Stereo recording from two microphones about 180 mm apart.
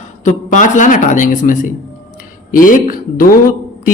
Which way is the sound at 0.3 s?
45° left (ahead or behind).